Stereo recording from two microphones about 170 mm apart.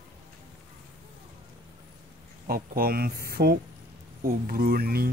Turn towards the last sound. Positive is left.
turn(degrees=-60)  # may be behind; listen again after turning